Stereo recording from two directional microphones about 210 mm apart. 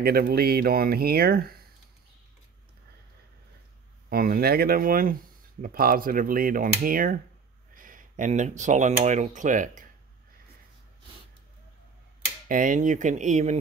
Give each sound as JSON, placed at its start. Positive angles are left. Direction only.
{"t": 0.0, "sound": "speech", "side_deg": -45}
{"t": 4.1, "sound": "speech", "side_deg": -45}
{"t": 12.4, "sound": "speech", "side_deg": -40}